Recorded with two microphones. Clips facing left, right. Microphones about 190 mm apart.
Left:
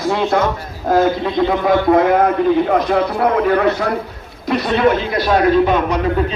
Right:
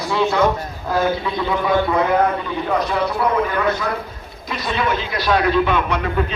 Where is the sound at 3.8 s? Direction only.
70° left (ahead or behind).